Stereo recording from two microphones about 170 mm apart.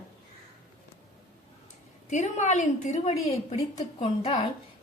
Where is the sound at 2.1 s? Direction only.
45° left (ahead or behind).